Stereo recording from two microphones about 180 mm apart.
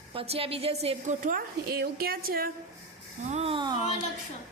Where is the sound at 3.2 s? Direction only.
35° right (ahead or behind).